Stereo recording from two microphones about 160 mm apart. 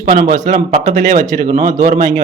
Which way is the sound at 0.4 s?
50° right (ahead or behind).